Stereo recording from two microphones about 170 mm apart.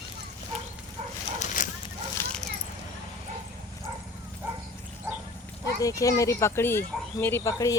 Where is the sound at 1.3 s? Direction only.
50° left (ahead or behind).